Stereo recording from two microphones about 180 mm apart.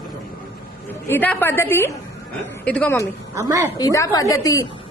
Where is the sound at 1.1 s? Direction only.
10° left (ahead or behind).